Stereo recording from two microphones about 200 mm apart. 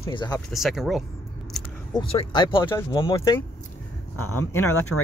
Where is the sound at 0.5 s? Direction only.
Centre (ahead or behind).